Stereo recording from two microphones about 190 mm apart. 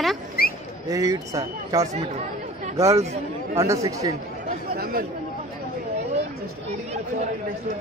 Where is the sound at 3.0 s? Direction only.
35° right (ahead or behind).